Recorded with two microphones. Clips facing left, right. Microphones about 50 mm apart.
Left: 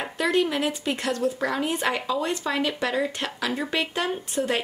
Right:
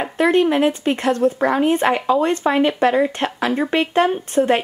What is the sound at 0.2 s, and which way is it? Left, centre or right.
A woman's voice, right.